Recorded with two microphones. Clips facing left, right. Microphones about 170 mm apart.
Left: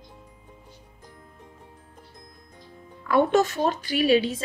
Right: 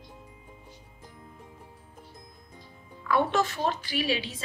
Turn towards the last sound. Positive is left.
turn(degrees=45)  # may be behind; listen again after turning